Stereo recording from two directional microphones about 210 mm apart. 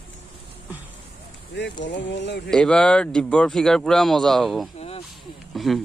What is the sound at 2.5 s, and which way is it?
Speech, 5° left (ahead or behind).